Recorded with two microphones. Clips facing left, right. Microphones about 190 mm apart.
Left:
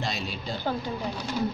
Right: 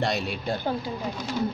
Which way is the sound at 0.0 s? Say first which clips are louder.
Right 5 dB; 60° right (ahead or behind).